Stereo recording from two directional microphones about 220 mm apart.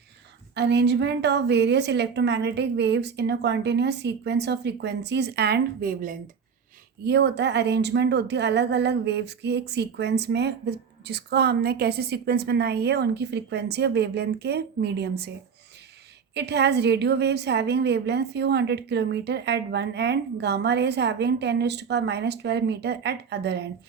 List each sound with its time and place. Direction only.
0.5 s speech: 50° right (ahead or behind)
16.3 s speech: 50° right (ahead or behind)